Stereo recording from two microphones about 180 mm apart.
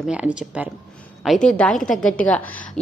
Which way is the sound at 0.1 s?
5° right (ahead or behind).